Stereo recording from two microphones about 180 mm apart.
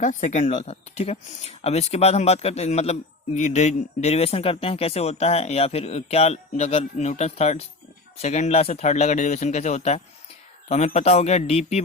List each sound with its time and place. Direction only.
0.0 s speech: 45° left (ahead or behind)